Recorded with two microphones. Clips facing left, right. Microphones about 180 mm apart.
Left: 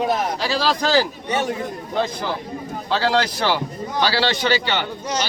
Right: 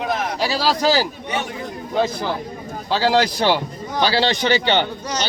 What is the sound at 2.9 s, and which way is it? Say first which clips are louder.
A man's voice: right 2 dB; 15° right (ahead or behind).